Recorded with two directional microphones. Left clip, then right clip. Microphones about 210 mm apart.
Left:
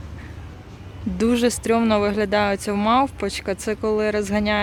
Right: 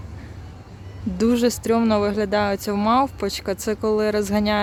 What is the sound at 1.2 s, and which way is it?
Speech, centre (ahead or behind).